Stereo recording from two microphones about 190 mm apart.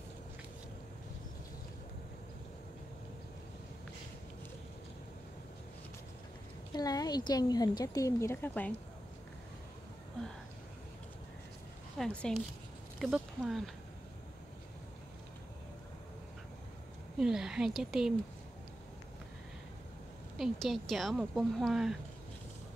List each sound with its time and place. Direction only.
6.7 s a woman's voice: 20° left (ahead or behind)
12.0 s a woman's voice: 5° left (ahead or behind)
17.2 s a woman's voice: 5° right (ahead or behind)
20.3 s a woman's voice: centre (ahead or behind)